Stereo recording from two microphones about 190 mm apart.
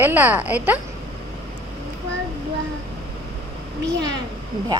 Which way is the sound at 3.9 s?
65° right (ahead or behind).